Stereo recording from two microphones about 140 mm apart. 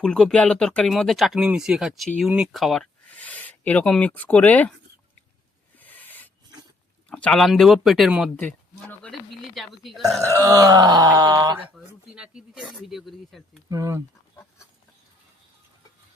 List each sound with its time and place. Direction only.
0.0 s speech: 5° left (ahead or behind)
3.1 s speech: 10° left (ahead or behind)
5.8 s a sound: 10° left (ahead or behind)
7.1 s speech: 5° left (ahead or behind)
8.4 s speech: 10° left (ahead or behind)
10.0 s speech: 20° right (ahead or behind)
11.7 s speech: 5° right (ahead or behind)
13.7 s speech: 25° right (ahead or behind)